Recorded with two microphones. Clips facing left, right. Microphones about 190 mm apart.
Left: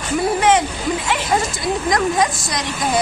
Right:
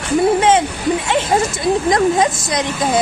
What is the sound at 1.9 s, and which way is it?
Speech, 25° right (ahead or behind).